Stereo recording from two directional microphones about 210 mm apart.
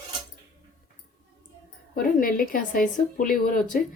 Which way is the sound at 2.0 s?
45° left (ahead or behind).